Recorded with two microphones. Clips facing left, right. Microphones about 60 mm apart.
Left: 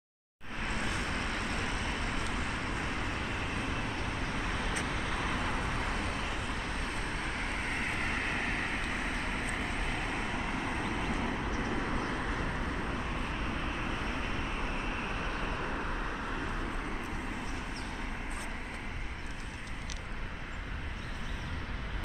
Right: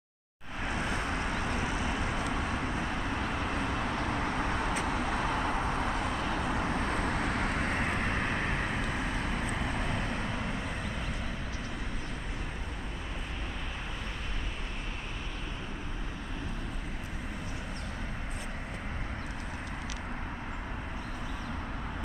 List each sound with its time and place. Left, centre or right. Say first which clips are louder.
1.3 s vehicle: right 3 dB; centre
5.1 s vehicle: right 3 dB; centre
7.0 s vehicle: right 5 dB; right
7.6 s vehicle: right 3 dB; centre
8.1 s vehicle: right 2 dB; centre